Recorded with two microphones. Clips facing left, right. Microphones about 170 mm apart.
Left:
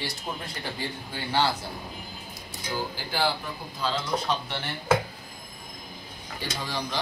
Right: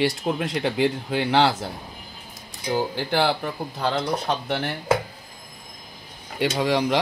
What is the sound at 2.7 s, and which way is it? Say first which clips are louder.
Speech: right 8 dB; 60° right (ahead or behind).